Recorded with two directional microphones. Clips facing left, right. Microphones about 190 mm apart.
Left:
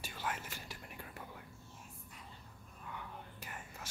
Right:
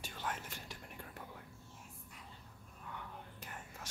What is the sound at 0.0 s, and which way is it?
Whispering, 5° left (ahead or behind).